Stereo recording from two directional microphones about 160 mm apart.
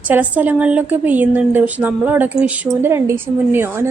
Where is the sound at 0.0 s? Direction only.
10° right (ahead or behind).